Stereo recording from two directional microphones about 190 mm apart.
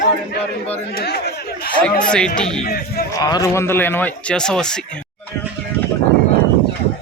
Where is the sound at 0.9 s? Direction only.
55° left (ahead or behind).